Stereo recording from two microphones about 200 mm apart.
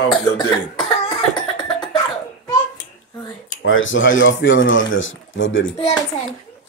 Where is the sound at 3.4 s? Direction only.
75° left (ahead or behind).